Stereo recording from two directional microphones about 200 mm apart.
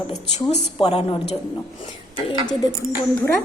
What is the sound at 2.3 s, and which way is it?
Speech, 20° left (ahead or behind).